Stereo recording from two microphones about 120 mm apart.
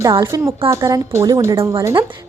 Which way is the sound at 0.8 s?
30° right (ahead or behind).